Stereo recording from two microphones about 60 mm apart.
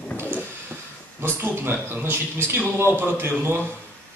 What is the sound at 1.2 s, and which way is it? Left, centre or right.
Speech, right.